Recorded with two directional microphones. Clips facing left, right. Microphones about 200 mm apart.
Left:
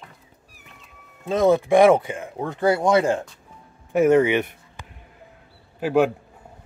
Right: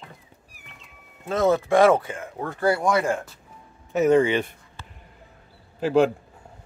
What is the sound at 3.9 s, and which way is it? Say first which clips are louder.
Speech: left 2 dB; 10° left (ahead or behind).